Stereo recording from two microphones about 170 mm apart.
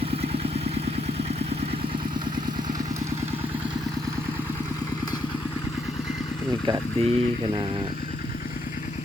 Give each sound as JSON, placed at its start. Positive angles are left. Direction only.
{"t": 6.7, "sound": "speech", "side_deg": -35}